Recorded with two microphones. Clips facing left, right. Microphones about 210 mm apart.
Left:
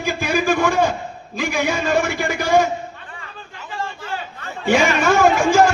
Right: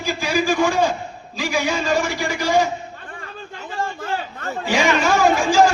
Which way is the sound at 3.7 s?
45° right (ahead or behind).